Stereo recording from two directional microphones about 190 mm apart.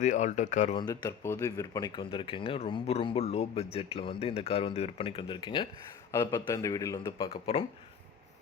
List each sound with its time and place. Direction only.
0.0 s speech: 40° left (ahead or behind)
0.8 s speech: 20° left (ahead or behind)